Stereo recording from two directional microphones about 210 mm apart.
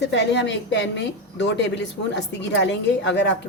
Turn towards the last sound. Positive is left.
turn(degrees=55)  # may be behind; listen again after turning